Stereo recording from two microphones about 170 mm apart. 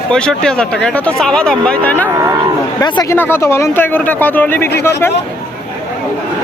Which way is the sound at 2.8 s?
25° left (ahead or behind).